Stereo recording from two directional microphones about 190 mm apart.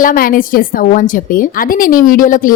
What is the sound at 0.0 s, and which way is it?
A woman's voice, 45° left (ahead or behind).